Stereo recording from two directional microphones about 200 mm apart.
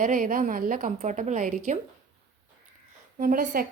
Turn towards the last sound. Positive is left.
turn(degrees=-45)  # may be behind; listen again after turning